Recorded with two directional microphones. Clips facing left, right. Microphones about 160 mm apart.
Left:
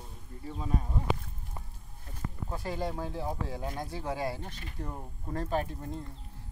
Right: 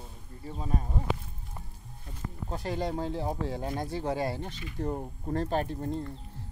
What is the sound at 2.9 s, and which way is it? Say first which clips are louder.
Speech: right 4 dB; 30° right (ahead or behind).